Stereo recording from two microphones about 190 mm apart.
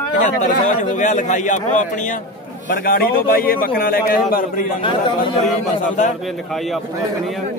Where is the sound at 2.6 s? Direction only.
50° left (ahead or behind).